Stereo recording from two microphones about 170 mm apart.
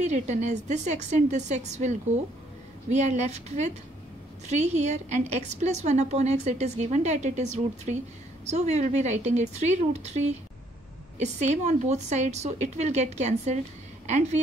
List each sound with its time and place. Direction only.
0.0 s a woman's voice: 45° right (ahead or behind)